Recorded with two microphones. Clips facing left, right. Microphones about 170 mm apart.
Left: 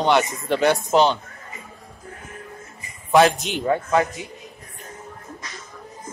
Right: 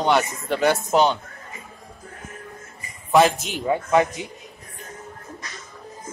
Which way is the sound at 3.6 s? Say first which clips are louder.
Right 1 dB; 15° right (ahead or behind).